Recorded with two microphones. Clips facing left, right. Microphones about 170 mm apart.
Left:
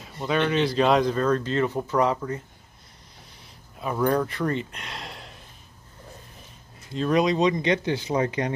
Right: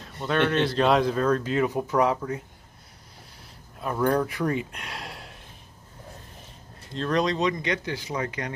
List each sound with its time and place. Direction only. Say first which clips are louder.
0.0 s speech: even; 5° left (ahead or behind)
3.8 s speech: even; centre (ahead or behind)
6.9 s speech: left 3 dB; 5° left (ahead or behind); by 8.5 s 25° left (ahead or behind)